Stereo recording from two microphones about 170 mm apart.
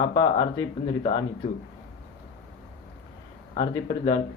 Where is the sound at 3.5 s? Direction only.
30° left (ahead or behind).